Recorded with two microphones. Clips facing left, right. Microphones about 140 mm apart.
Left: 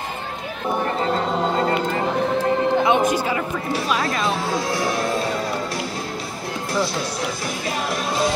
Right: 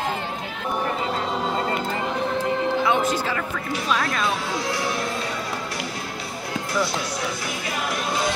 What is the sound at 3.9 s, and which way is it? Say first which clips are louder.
Speech: even; 5° left (ahead or behind).